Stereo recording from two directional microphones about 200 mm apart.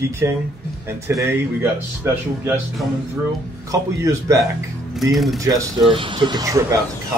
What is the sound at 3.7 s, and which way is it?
Speech, 15° right (ahead or behind).